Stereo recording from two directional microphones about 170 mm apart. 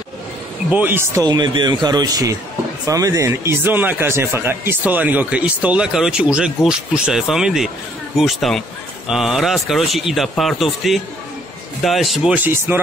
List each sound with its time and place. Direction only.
0.7 s speech: 10° right (ahead or behind)
12.4 s speech: 15° right (ahead or behind)